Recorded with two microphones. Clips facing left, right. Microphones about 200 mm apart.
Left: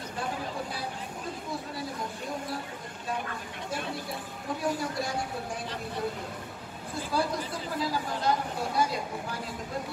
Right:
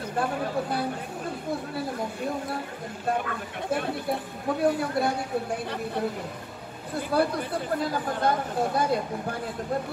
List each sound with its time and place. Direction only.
0.2 s speech: 55° right (ahead or behind)
3.1 s speech: 60° right (ahead or behind)
7.0 s speech: 60° right (ahead or behind)